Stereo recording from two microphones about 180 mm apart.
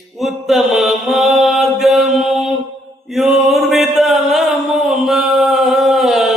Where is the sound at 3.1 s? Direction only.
Centre (ahead or behind).